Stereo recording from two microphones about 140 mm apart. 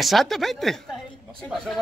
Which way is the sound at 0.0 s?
Centre (ahead or behind).